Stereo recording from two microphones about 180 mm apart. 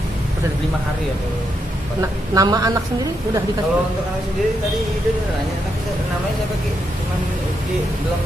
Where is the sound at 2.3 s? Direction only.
20° right (ahead or behind).